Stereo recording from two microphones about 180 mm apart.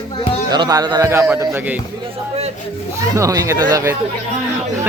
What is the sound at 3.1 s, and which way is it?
Speech, 20° right (ahead or behind).